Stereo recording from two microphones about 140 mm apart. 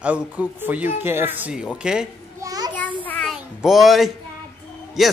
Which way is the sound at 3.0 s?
5° left (ahead or behind).